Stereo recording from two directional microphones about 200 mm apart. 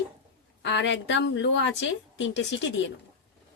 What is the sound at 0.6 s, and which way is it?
A woman's voice, 60° left (ahead or behind).